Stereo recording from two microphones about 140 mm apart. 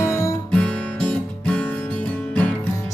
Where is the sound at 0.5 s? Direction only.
5° left (ahead or behind).